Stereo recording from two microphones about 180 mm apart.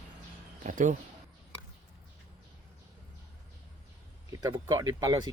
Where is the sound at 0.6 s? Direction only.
45° right (ahead or behind).